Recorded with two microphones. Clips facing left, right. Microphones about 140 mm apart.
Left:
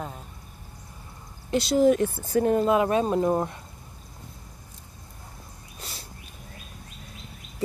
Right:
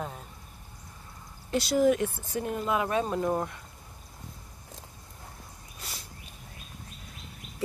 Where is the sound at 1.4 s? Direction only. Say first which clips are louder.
Left 4 dB; 25° left (ahead or behind).